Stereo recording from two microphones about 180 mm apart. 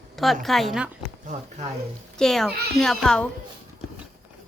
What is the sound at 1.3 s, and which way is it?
Speech, 40° right (ahead or behind).